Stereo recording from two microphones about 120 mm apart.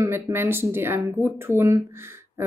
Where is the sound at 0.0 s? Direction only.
20° right (ahead or behind).